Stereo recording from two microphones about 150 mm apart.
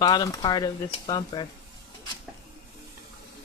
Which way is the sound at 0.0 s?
25° left (ahead or behind).